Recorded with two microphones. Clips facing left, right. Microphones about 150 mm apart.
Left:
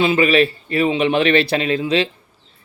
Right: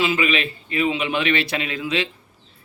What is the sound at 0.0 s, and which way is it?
Speech, 35° left (ahead or behind).